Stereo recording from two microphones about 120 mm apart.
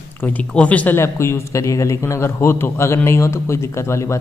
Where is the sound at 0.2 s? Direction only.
10° left (ahead or behind).